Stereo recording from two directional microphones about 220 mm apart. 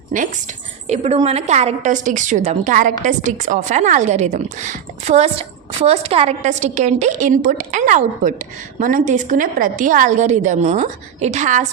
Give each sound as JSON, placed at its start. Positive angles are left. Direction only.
{"t": 0.1, "sound": "a woman's voice", "side_deg": -35}